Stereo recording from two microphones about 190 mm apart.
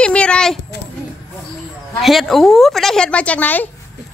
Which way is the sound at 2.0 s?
Centre (ahead or behind).